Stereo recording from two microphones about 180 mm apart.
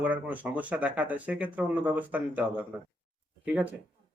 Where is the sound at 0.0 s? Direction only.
10° right (ahead or behind).